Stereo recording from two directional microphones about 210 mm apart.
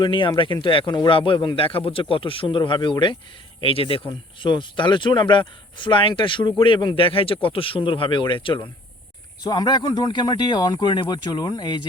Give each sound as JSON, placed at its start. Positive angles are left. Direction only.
{"t": 0.0, "sound": "speech", "side_deg": 25}